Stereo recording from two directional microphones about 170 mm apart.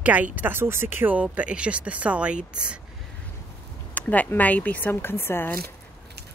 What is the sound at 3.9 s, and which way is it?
Speech, 10° left (ahead or behind).